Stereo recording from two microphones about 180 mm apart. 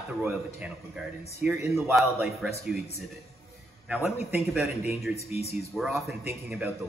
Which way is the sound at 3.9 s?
10° right (ahead or behind).